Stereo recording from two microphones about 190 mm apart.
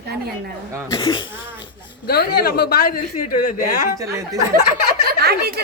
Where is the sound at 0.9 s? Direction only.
25° left (ahead or behind).